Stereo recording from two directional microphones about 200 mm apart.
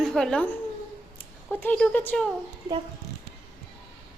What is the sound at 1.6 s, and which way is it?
Speech, 5° left (ahead or behind).